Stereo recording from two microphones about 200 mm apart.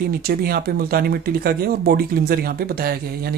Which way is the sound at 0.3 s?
50° right (ahead or behind).